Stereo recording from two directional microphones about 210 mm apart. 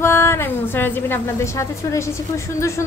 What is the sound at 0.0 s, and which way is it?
A woman's voice, 10° left (ahead or behind).